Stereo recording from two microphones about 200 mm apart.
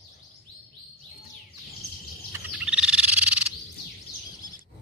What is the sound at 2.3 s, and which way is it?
Frog, 5° right (ahead or behind).